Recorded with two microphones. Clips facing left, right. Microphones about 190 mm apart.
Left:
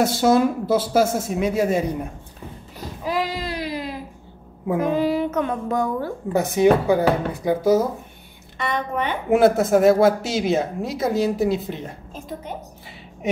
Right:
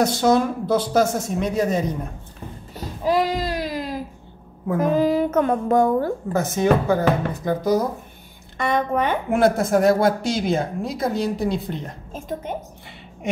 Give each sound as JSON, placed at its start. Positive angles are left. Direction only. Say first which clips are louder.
{"t": 0.0, "sound": "speech", "louder": "left 1 dB", "side_deg": 5}
{"t": 3.1, "sound": "a sound", "louder": "right 4 dB", "side_deg": -40}
{"t": 4.8, "sound": "a child's voice", "louder": "right 3 dB", "side_deg": -40}
{"t": 6.3, "sound": "speech", "louder": "left 3 dB", "side_deg": 15}
{"t": 8.5, "sound": "a child's voice", "louder": "right 4 dB", "side_deg": -45}
{"t": 9.3, "sound": "speech", "louder": "left 3 dB", "side_deg": 5}